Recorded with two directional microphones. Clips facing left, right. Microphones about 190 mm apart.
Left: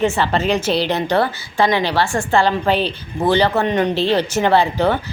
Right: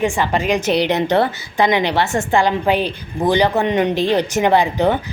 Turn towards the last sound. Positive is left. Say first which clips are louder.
# right 1 dB
turn(degrees=-15)  # may be behind; listen again after turning